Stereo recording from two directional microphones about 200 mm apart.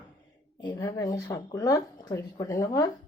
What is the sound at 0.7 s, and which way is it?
Speech, 20° left (ahead or behind).